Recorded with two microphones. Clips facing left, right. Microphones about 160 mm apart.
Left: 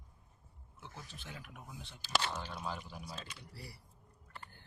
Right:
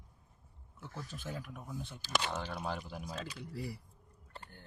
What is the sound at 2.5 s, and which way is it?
Speech, 65° right (ahead or behind).